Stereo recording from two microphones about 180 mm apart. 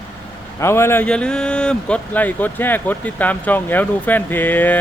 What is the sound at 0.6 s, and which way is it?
Speech, 15° left (ahead or behind).